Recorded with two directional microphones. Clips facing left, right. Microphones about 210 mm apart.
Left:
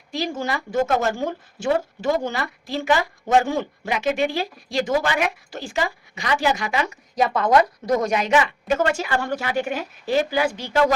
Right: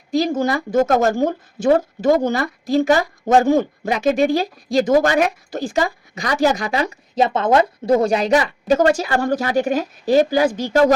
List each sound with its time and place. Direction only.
0.3 s speech: 40° right (ahead or behind)